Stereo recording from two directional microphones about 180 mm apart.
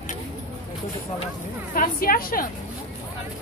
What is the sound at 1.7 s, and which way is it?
Speech, 50° left (ahead or behind).